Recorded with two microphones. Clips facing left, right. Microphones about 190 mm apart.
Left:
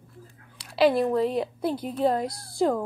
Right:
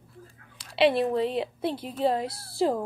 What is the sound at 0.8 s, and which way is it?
A woman's voice, 25° right (ahead or behind).